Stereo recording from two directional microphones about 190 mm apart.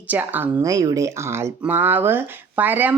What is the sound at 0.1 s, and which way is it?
Speech, 10° right (ahead or behind).